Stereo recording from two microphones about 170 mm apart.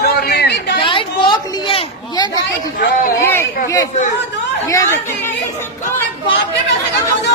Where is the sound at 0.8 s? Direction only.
30° left (ahead or behind).